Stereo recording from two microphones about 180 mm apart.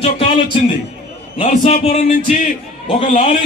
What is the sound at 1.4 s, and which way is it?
Speech, 40° left (ahead or behind).